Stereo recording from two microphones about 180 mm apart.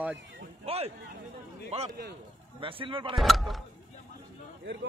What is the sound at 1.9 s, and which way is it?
Speech, 60° right (ahead or behind).